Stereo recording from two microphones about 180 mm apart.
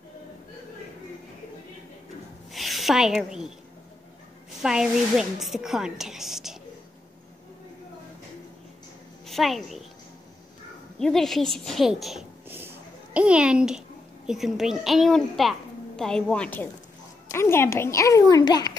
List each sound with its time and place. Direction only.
2.5 s a sound: centre (ahead or behind)
4.6 s a woman's voice: 5° right (ahead or behind)
9.2 s a woman's voice: centre (ahead or behind)
11.0 s a woman's voice: centre (ahead or behind); by 18.7 s 20° left (ahead or behind)